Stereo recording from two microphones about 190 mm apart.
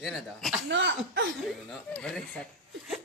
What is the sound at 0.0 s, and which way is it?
Speech, centre (ahead or behind).